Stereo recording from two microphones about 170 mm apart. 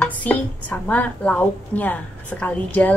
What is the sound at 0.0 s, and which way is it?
Speech, 10° left (ahead or behind).